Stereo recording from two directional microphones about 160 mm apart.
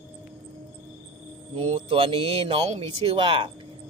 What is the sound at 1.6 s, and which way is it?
Speech, 35° right (ahead or behind).